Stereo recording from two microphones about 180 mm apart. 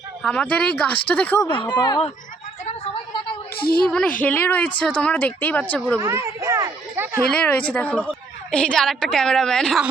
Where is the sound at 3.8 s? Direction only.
5° left (ahead or behind).